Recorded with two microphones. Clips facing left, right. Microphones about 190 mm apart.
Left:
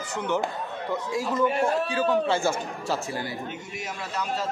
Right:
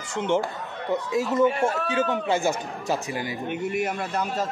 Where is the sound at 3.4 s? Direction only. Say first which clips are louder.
Right 9 dB; 60° right (ahead or behind).